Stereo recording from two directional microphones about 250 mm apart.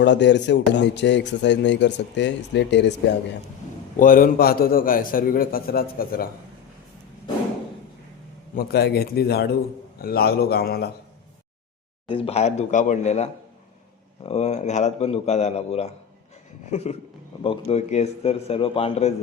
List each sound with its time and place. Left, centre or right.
0.0 s a man's voice: left
3.9 s a man's voice: left
8.5 s a man's voice: left
12.0 s a man's voice: left